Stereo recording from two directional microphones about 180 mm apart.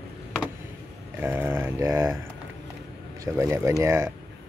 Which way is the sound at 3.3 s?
15° right (ahead or behind).